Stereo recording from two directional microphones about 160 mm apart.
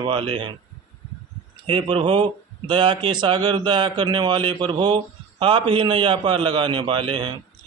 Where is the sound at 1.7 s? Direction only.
30° right (ahead or behind).